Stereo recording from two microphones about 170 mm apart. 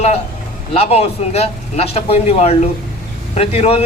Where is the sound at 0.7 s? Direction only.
35° left (ahead or behind).